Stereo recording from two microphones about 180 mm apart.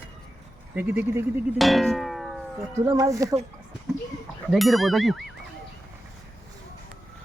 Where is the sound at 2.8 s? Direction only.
15° right (ahead or behind).